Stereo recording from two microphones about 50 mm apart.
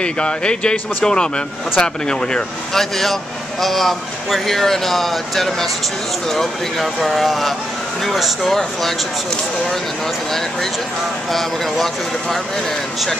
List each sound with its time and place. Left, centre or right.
0.0 s speech: centre
11.3 s speech: centre